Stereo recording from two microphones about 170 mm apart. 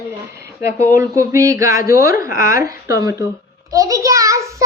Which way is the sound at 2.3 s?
55° left (ahead or behind).